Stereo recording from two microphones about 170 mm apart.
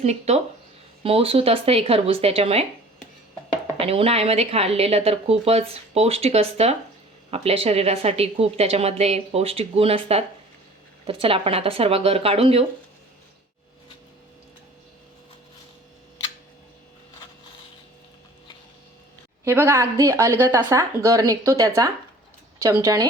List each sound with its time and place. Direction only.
0.0 s a woman's voice: 40° right (ahead or behind)
3.8 s a woman's voice: 35° right (ahead or behind)
19.5 s speech: 15° right (ahead or behind)